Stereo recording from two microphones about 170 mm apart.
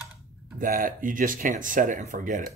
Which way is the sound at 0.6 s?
55° right (ahead or behind).